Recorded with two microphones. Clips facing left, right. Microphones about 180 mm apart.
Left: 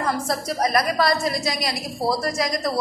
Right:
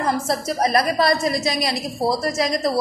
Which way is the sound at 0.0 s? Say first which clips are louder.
Right 2 dB; 25° right (ahead or behind).